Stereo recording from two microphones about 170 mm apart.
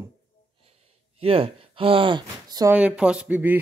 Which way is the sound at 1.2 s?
35° right (ahead or behind).